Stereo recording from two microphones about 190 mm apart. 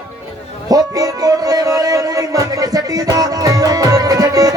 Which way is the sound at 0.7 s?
20° right (ahead or behind).